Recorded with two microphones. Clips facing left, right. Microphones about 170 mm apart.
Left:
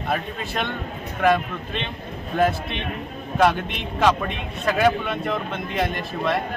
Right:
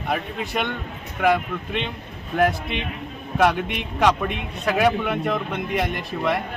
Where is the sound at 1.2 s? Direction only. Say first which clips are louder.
Even; 10° right (ahead or behind).